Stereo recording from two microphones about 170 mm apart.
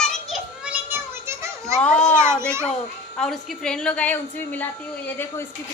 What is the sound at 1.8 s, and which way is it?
Speech, 5° left (ahead or behind).